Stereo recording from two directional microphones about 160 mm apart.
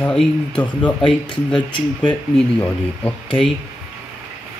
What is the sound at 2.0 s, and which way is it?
Speech, 10° left (ahead or behind).